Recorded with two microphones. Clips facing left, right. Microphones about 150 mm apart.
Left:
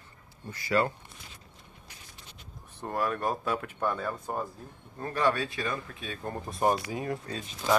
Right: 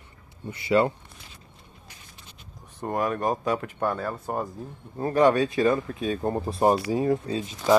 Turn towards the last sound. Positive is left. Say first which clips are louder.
# right 9 dB
turn(degrees=-25)  # may be behind; listen again after turning